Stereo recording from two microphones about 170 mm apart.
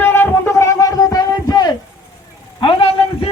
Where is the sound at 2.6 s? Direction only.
35° left (ahead or behind).